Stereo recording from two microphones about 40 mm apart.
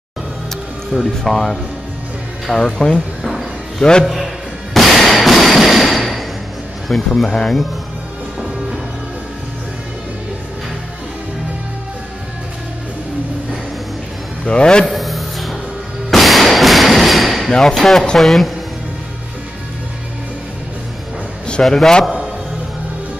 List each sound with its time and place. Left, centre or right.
1.2 s a man's voice: centre
4.7 s a sound: centre
6.9 s speech: centre
7.2 s speech: centre
14.4 s a man's voice: left
14.9 s a sound: centre
16.1 s artillery fire: centre
17.5 s speech: centre
21.6 s speech: centre